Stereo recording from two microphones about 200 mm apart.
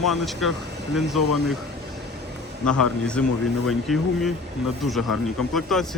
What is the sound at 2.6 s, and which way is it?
Speech, 5° left (ahead or behind).